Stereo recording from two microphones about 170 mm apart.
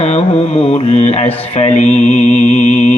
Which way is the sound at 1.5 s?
40° left (ahead or behind).